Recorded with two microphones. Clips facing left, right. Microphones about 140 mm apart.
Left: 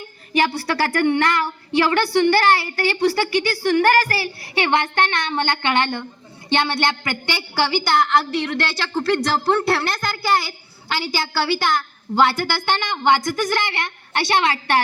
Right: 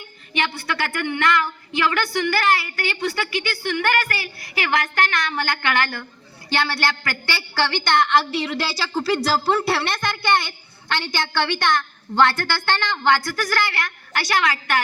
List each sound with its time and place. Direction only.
0.0 s a woman's voice: 35° left (ahead or behind)